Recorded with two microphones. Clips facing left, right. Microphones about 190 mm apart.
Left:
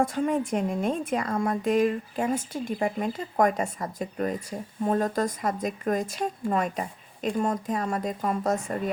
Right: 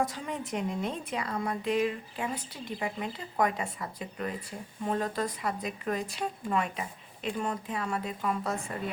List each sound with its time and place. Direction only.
0.0 s speech: 50° left (ahead or behind)